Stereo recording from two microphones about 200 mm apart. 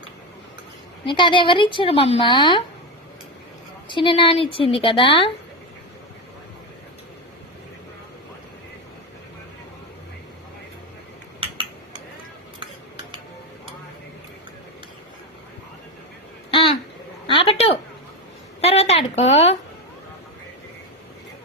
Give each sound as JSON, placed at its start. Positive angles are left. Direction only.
{"t": 1.0, "sound": "speech", "side_deg": 25}
{"t": 3.8, "sound": "speech", "side_deg": 25}
{"t": 16.5, "sound": "a sound", "side_deg": 25}